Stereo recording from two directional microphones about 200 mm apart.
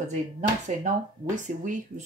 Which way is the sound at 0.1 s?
35° right (ahead or behind).